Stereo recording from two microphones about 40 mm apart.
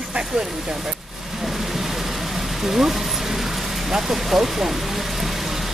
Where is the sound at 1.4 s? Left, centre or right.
Centre.